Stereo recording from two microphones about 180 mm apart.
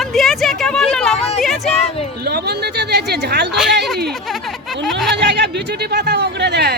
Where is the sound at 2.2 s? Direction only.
65° right (ahead or behind).